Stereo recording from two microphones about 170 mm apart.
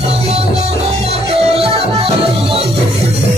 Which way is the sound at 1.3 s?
35° right (ahead or behind).